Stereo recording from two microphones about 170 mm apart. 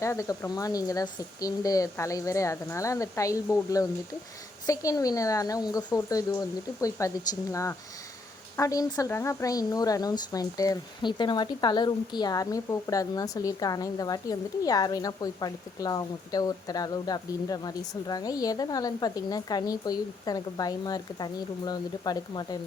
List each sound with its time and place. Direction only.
0.0 s a woman's voice: 20° left (ahead or behind)